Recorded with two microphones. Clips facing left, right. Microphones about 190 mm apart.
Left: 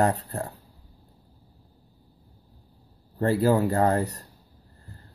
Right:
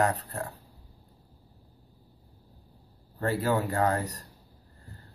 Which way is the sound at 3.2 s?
35° left (ahead or behind).